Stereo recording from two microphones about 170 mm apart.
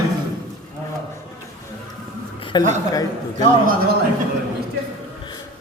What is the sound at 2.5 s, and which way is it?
Speech, 25° left (ahead or behind).